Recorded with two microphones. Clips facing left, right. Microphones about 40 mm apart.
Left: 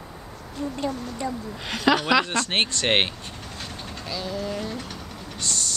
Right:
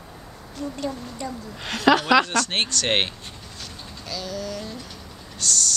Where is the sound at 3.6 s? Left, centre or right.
Left.